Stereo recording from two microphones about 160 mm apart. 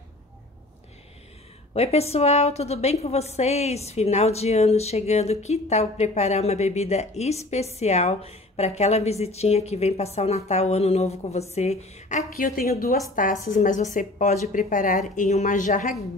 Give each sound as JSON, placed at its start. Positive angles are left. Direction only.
{"t": 1.7, "sound": "a woman's voice", "side_deg": 40}